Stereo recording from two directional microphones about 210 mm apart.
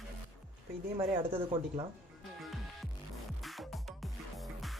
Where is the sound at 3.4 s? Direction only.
Centre (ahead or behind).